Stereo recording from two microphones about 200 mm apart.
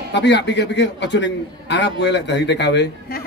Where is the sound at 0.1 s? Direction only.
60° left (ahead or behind).